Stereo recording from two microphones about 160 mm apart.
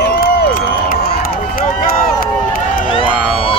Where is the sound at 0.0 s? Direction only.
85° left.